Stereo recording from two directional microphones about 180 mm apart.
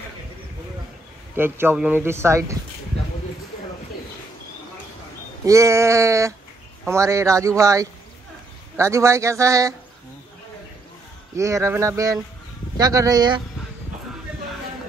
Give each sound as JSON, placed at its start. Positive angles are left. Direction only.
{"t": 1.3, "sound": "speech", "side_deg": -10}
{"t": 5.4, "sound": "speech", "side_deg": -15}
{"t": 11.3, "sound": "speech", "side_deg": -15}